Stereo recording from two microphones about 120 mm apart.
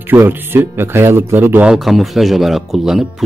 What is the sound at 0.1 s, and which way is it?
Speech, 15° right (ahead or behind).